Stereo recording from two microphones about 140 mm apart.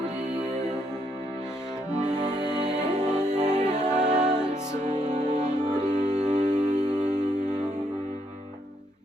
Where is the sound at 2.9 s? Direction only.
30° right (ahead or behind).